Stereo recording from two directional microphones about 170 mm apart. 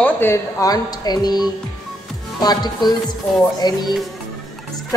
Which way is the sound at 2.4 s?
25° left (ahead or behind).